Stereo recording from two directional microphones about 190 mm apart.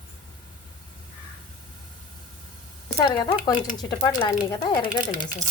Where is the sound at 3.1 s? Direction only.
20° left (ahead or behind).